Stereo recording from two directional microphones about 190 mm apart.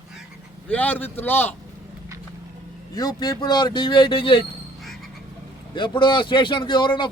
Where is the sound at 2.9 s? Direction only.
20° left (ahead or behind).